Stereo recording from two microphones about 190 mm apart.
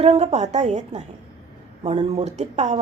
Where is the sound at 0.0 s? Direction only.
35° right (ahead or behind).